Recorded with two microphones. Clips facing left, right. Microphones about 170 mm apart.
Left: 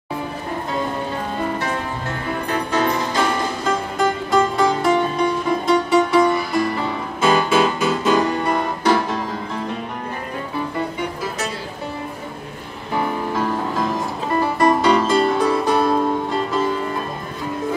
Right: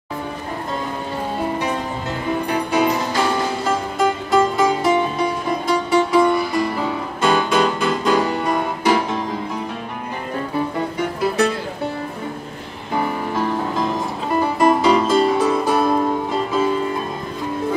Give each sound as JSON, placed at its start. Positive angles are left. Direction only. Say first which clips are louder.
{"t": 2.4, "sound": "music", "louder": "right 1 dB", "side_deg": -10}
{"t": 8.8, "sound": "music", "louder": "even", "side_deg": -15}
{"t": 11.1, "sound": "music", "louder": "right 8 dB", "side_deg": -65}
{"t": 13.7, "sound": "music", "louder": "even", "side_deg": 0}